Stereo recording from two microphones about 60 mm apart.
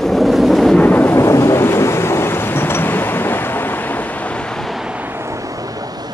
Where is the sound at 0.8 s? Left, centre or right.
Left.